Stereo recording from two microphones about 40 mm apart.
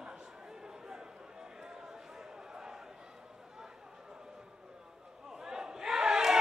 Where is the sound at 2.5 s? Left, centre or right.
Centre.